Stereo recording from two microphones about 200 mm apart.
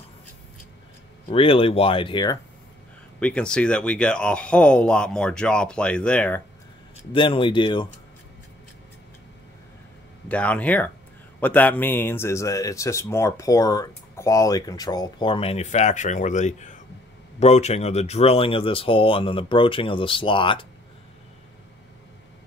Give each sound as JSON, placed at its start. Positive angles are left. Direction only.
{"t": 1.3, "sound": "speech", "side_deg": 25}
{"t": 3.2, "sound": "speech", "side_deg": 5}
{"t": 7.1, "sound": "speech", "side_deg": 25}
{"t": 10.2, "sound": "speech", "side_deg": 5}